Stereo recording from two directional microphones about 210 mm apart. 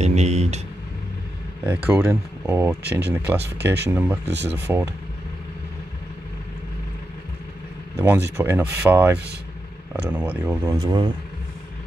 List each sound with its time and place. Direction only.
0.0 s vehicle: 30° right (ahead or behind)
1.7 s speech: 10° right (ahead or behind)
7.9 s speech: 10° right (ahead or behind)